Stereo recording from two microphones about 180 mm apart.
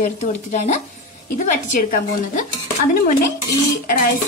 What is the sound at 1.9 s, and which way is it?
Speech, 45° left (ahead or behind).